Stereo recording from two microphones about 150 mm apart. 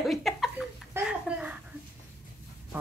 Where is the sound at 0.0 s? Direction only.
Centre (ahead or behind).